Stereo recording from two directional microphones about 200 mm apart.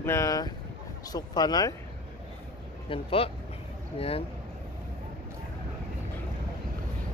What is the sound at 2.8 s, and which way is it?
Speech, 30° left (ahead or behind).